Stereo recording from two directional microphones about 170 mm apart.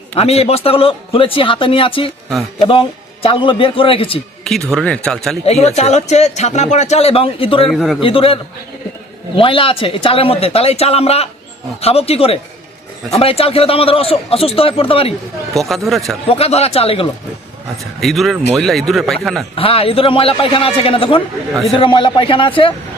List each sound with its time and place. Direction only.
0.1 s speech: 35° left (ahead or behind)
4.7 s a man's voice: 5° left (ahead or behind)
5.5 s speech: 40° left (ahead or behind)
7.7 s a man's voice: centre (ahead or behind)
8.0 s speech: 30° left (ahead or behind)
15.5 s a man's voice: centre (ahead or behind)
16.2 s speech: 35° left (ahead or behind)
18.0 s a man's voice: centre (ahead or behind)
19.5 s speech: 35° left (ahead or behind)
21.2 s a man's voice: centre (ahead or behind)
21.8 s speech: 30° left (ahead or behind)